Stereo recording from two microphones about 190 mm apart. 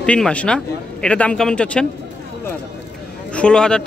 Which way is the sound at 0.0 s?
5° left (ahead or behind).